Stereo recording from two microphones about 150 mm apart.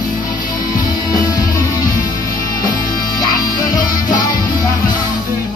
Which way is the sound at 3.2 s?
25° left (ahead or behind).